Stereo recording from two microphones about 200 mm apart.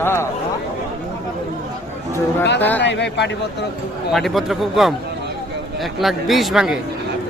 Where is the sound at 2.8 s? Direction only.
60° left (ahead or behind).